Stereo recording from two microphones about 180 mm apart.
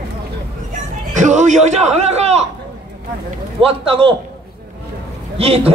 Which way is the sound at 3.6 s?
30° right (ahead or behind).